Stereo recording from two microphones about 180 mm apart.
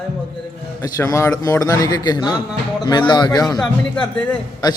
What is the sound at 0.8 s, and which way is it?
A man's voice, 15° left (ahead or behind).